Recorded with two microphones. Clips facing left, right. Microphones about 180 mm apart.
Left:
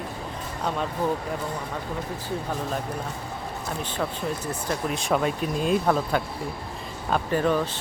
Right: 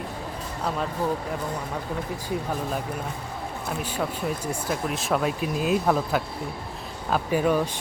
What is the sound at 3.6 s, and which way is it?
Speech, 5° right (ahead or behind).